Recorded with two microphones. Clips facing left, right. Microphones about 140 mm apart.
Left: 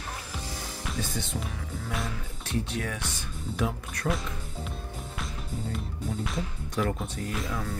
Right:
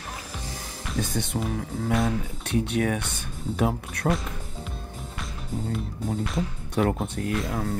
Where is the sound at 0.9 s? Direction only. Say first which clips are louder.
Right 7 dB; 55° right (ahead or behind).